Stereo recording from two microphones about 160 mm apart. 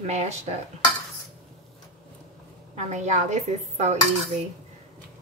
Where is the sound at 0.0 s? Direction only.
45° right (ahead or behind).